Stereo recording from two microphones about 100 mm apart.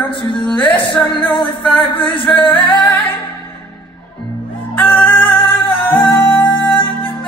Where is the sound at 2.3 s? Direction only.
20° left (ahead or behind).